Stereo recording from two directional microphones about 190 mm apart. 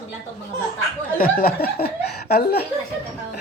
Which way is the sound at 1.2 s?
50° left (ahead or behind).